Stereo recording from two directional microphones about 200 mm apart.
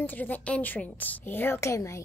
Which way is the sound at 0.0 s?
10° left (ahead or behind).